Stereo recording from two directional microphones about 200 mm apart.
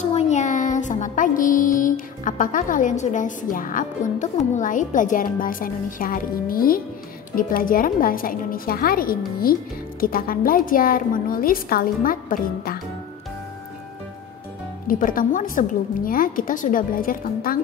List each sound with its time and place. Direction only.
0.0 s music: 35° left (ahead or behind)
7.3 s a woman's voice: 45° left (ahead or behind)
14.9 s a woman's voice: 45° left (ahead or behind)